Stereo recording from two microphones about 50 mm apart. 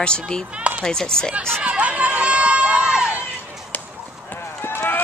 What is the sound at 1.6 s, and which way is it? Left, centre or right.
Run, right.